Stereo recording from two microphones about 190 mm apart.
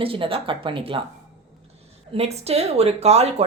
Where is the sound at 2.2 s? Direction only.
35° right (ahead or behind).